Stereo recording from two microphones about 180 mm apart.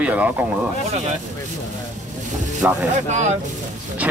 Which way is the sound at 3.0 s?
40° right (ahead or behind).